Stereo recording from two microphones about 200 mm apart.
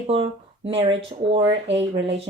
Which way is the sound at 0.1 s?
30° right (ahead or behind).